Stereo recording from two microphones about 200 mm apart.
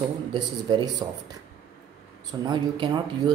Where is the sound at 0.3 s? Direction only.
25° right (ahead or behind).